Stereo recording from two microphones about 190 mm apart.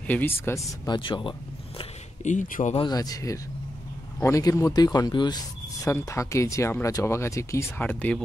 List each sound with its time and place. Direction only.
0.0 s speech: 10° left (ahead or behind); by 1.3 s 25° left (ahead or behind)
1.8 s a sound: 40° left (ahead or behind)
2.7 s speech: 25° left (ahead or behind)